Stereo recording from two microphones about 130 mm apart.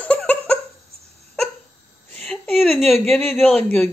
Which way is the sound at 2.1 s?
5° left (ahead or behind).